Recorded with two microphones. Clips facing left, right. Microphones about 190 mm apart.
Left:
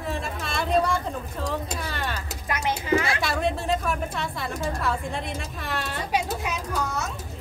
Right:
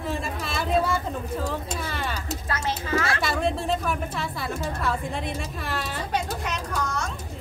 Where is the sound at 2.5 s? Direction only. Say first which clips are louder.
Left 5 dB; 15° left (ahead or behind).